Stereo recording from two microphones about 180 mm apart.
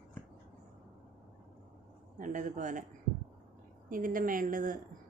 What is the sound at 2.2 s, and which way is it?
Speech, 45° right (ahead or behind).